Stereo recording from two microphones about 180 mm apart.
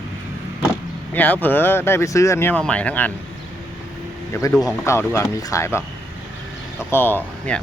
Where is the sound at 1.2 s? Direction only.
10° left (ahead or behind).